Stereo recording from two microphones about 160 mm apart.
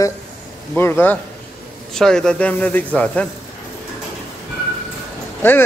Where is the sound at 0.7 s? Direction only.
15° left (ahead or behind).